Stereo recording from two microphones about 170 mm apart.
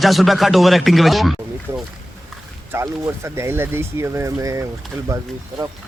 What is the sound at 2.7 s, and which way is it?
Speech, 15° right (ahead or behind).